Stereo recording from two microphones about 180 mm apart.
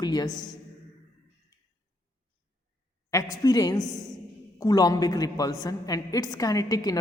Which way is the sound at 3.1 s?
20° left (ahead or behind).